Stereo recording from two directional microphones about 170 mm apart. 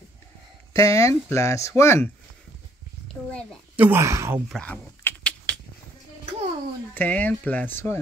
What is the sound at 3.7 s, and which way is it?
Speech, 10° right (ahead or behind).